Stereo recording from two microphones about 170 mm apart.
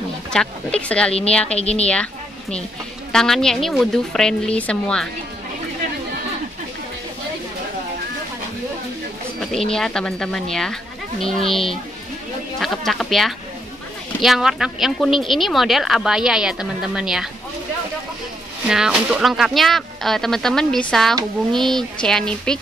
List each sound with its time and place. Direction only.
0.3 s speech: 5° left (ahead or behind)
1.6 s a woman's voice: 40° left (ahead or behind)
3.1 s speech: 5° left (ahead or behind)
9.4 s speech: 5° left (ahead or behind)
12.5 s a sound: centre (ahead or behind)
14.2 s speech: centre (ahead or behind)
18.7 s speech: 5° right (ahead or behind)